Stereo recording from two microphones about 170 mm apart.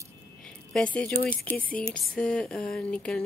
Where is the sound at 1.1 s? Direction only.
60° left (ahead or behind).